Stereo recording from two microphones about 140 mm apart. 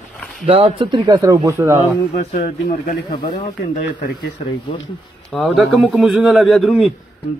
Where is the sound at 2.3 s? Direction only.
65° left (ahead or behind).